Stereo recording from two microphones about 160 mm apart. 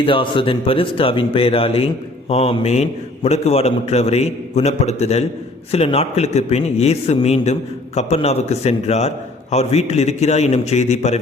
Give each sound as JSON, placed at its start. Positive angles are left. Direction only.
{"t": 0.0, "sound": "a man's voice", "side_deg": 30}